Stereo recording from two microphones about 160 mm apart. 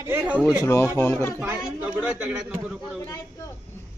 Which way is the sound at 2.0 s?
10° right (ahead or behind).